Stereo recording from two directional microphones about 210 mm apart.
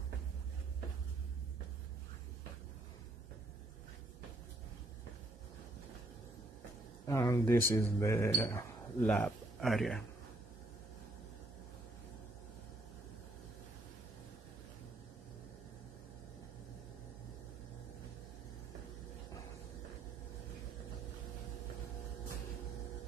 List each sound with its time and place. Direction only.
7.1 s speech: 15° left (ahead or behind)